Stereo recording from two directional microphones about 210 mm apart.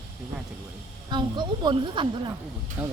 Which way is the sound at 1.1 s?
20° right (ahead or behind).